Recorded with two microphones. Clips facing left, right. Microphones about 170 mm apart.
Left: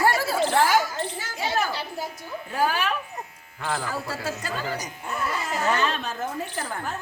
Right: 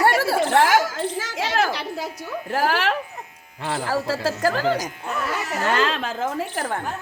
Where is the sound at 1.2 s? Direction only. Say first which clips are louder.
Right 4 dB; 90° right.